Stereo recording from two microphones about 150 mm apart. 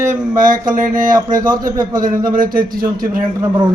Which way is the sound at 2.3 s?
70° right (ahead or behind).